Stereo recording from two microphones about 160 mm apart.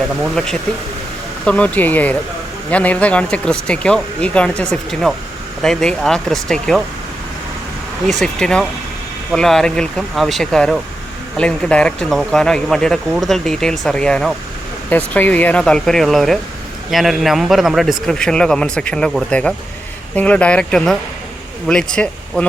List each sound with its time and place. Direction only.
1.5 s speech: 5° left (ahead or behind)
8.0 s speech: 5° left (ahead or behind)